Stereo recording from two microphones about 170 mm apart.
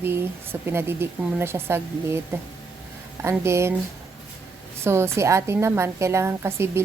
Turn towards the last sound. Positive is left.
turn(degrees=-15)  # may be behind; listen again after turning